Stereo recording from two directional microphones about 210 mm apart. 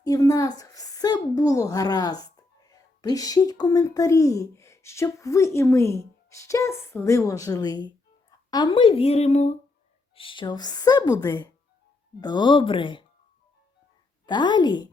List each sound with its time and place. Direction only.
0.0 s a woman's voice: 15° left (ahead or behind)
14.3 s a woman's voice: 20° left (ahead or behind)